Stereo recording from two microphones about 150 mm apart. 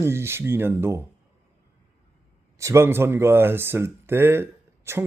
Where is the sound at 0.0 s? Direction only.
15° right (ahead or behind).